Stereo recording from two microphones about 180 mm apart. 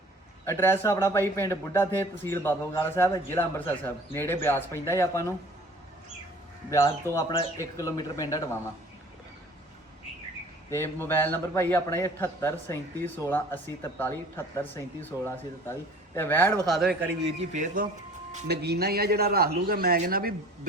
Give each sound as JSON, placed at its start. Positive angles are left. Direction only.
{"t": 0.4, "sound": "a man's voice", "side_deg": 15}
{"t": 6.7, "sound": "a man's voice", "side_deg": 20}
{"t": 10.7, "sound": "a man's voice", "side_deg": 15}
{"t": 16.6, "sound": "speech", "side_deg": 0}
{"t": 17.5, "sound": "speech", "side_deg": -45}
{"t": 18.4, "sound": "a man's voice", "side_deg": -65}